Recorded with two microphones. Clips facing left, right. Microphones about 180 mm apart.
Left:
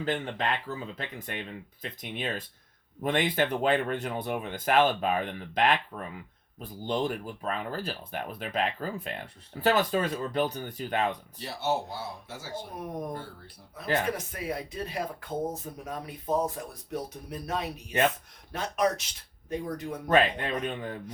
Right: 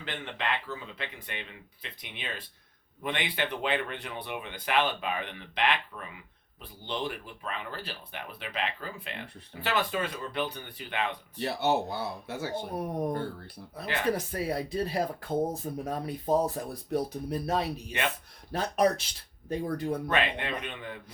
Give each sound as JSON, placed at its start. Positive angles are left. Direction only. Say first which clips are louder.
{"t": 0.0, "sound": "speech", "louder": "left 5 dB", "side_deg": 40}
{"t": 11.3, "sound": "speech", "louder": "right 6 dB", "side_deg": -65}
{"t": 14.2, "sound": "speech", "louder": "right 3 dB", "side_deg": -35}
{"t": 20.1, "sound": "speech", "louder": "left 5 dB", "side_deg": 40}